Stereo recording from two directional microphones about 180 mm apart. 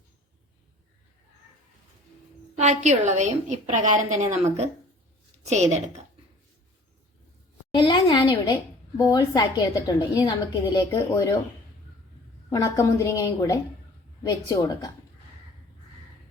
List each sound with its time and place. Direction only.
2.6 s a woman's voice: 40° right (ahead or behind)
7.7 s a woman's voice: 25° left (ahead or behind)
12.5 s a woman's voice: 20° left (ahead or behind)